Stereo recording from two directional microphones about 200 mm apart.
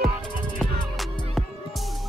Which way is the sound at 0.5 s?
Centre (ahead or behind).